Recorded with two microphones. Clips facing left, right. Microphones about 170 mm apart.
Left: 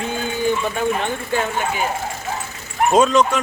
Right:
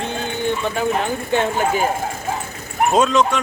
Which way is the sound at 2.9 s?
Centre (ahead or behind).